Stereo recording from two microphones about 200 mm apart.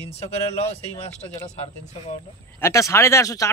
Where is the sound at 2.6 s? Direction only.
15° left (ahead or behind).